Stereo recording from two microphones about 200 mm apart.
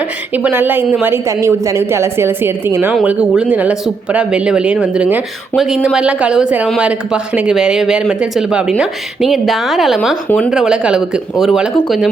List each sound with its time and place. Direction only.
0.3 s a woman's voice: 10° right (ahead or behind)